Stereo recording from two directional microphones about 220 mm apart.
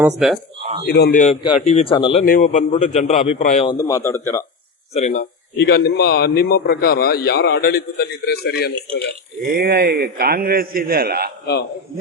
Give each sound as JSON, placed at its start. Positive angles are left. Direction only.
{"t": 0.0, "sound": "speech", "side_deg": -5}
{"t": 0.9, "sound": "a man's voice", "side_deg": 45}
{"t": 1.2, "sound": "speech", "side_deg": 30}
{"t": 2.2, "sound": "a man's voice", "side_deg": 35}
{"t": 3.8, "sound": "a man's voice", "side_deg": 15}
{"t": 4.9, "sound": "a man's voice", "side_deg": 30}
{"t": 5.5, "sound": "a man's voice", "side_deg": 45}
{"t": 9.6, "sound": "a man's voice", "side_deg": -45}